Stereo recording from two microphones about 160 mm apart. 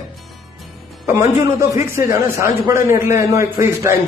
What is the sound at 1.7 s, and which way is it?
A man's voice, 15° right (ahead or behind).